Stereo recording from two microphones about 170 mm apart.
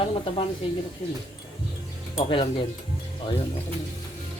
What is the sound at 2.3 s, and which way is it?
Speech, 30° left (ahead or behind).